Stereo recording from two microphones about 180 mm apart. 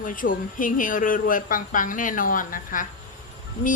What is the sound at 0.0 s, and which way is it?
A woman's voice, 50° left (ahead or behind).